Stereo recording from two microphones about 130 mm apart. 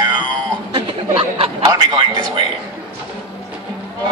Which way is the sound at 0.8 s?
45° right (ahead or behind).